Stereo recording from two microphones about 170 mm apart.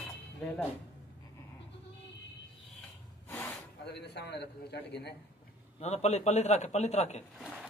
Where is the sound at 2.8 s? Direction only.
10° left (ahead or behind).